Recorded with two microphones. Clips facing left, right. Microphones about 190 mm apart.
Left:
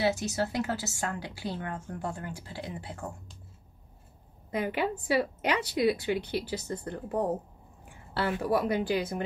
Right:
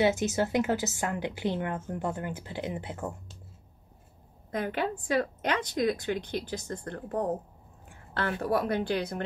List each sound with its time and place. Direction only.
0.0 s a woman's voice: 20° right (ahead or behind)
4.5 s a woman's voice: 10° left (ahead or behind)